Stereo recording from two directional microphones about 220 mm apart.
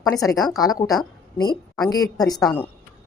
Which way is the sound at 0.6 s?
15° left (ahead or behind).